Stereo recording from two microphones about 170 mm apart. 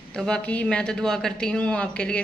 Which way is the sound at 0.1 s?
5° left (ahead or behind).